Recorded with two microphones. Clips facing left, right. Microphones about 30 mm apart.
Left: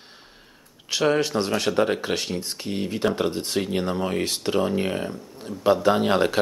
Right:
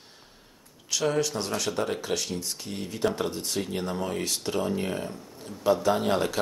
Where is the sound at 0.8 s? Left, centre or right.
Left.